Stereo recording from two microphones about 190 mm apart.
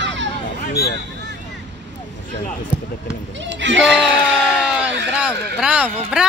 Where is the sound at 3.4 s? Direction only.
70° right (ahead or behind).